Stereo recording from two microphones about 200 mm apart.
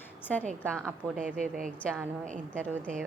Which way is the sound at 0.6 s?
5° left (ahead or behind).